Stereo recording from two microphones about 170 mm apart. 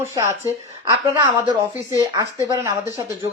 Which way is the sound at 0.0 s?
15° right (ahead or behind).